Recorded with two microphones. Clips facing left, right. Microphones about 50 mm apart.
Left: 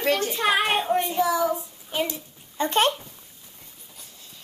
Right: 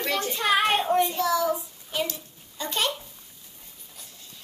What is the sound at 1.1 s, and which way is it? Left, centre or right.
A child's voice, centre.